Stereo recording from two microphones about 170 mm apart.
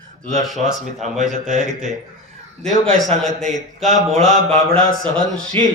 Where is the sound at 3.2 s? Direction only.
Centre (ahead or behind).